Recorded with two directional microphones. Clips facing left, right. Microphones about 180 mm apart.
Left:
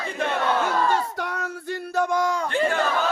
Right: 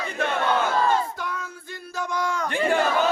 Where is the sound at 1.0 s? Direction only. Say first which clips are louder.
Left 1 dB; 70° left (ahead or behind); by 2.3 s 50° left (ahead or behind).